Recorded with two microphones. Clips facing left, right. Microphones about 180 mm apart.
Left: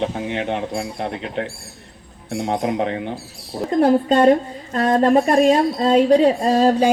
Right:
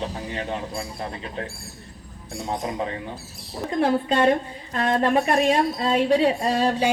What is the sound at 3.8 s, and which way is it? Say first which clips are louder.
A woman's voice: left 6 dB; 40° left (ahead or behind).